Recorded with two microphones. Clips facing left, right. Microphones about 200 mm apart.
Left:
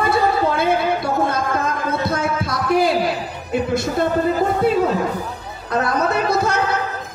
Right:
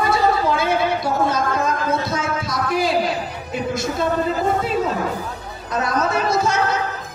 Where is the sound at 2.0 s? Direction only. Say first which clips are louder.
Left 3 dB; 60° left (ahead or behind).